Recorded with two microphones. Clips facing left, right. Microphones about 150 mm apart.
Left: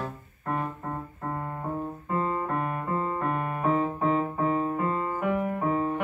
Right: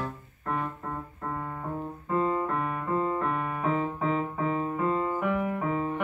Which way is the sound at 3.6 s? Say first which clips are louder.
Left 4 dB; 40° left (ahead or behind).